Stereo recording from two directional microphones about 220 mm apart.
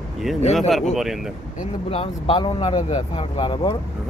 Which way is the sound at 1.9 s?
25° left (ahead or behind).